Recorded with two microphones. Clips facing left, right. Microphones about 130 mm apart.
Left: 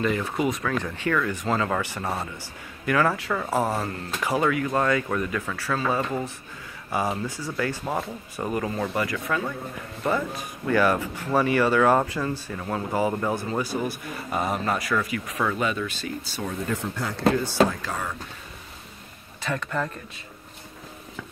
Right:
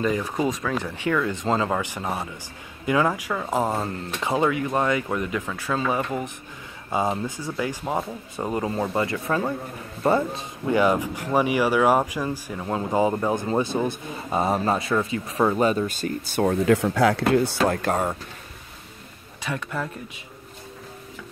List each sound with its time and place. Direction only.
0.5 s speech: 15° right (ahead or behind); by 16.5 s 55° right (ahead or behind)
16.6 s speech: 85° right
17.3 s speech: 60° right (ahead or behind)
19.4 s speech: 10° right (ahead or behind)